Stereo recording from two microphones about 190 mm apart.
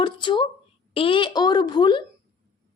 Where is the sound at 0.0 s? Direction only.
25° left (ahead or behind).